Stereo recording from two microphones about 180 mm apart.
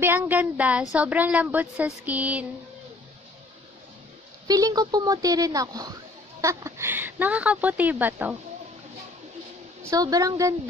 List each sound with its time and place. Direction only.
0.0 s speech: 10° right (ahead or behind)
4.5 s speech: 20° right (ahead or behind)
9.8 s speech: 20° right (ahead or behind)